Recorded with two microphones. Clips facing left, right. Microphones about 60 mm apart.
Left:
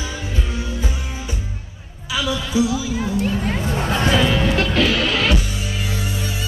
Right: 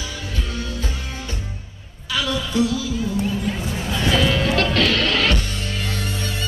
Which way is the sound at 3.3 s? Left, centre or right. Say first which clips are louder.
Left 2 dB; left.